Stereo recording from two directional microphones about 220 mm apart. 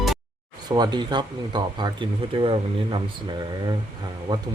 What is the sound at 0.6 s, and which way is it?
Speech, 20° right (ahead or behind).